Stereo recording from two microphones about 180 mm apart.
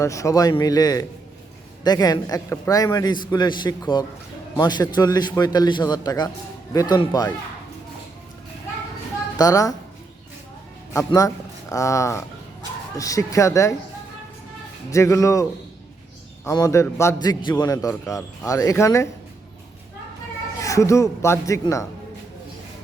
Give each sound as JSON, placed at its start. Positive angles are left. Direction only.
{"t": 0.0, "sound": "a man's voice", "side_deg": 15}
{"t": 9.4, "sound": "a man's voice", "side_deg": 20}
{"t": 10.9, "sound": "a man's voice", "side_deg": 20}
{"t": 14.8, "sound": "a man's voice", "side_deg": 15}
{"t": 20.6, "sound": "a man's voice", "side_deg": 15}